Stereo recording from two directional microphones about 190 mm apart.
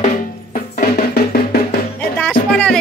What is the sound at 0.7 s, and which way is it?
Music, 50° left (ahead or behind).